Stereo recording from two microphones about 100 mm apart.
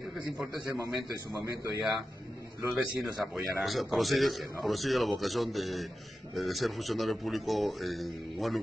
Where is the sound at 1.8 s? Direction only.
5° right (ahead or behind).